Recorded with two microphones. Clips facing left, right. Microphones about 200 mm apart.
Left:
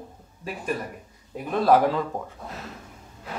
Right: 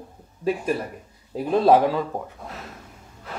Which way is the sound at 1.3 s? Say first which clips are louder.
Right 3 dB; 30° right (ahead or behind).